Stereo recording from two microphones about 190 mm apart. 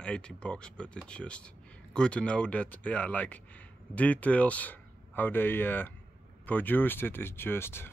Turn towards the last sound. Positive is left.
turn(degrees=10)  # may be behind; listen again after turning